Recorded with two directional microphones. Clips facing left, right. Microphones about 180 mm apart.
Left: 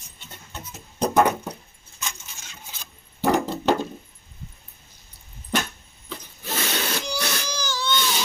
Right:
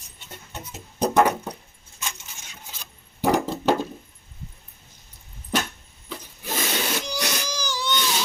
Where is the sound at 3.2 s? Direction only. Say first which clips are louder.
Even; 5° right (ahead or behind).